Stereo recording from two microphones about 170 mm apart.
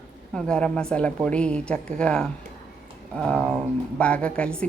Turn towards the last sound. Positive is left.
turn(degrees=5)  # may be behind; listen again after turning